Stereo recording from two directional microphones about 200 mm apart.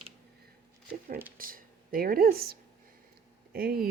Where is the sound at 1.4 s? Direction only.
45° right (ahead or behind).